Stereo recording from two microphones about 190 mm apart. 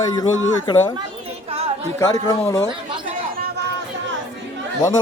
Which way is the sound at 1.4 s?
30° right (ahead or behind).